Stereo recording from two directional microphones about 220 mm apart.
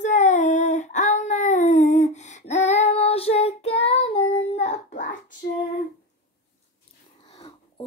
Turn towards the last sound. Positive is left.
turn(degrees=20)  # may be behind; listen again after turning